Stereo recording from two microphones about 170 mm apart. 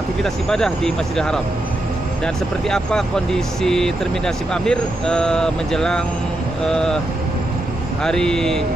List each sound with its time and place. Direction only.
0.2 s speech: 5° left (ahead or behind)
8.0 s speech: 5° left (ahead or behind)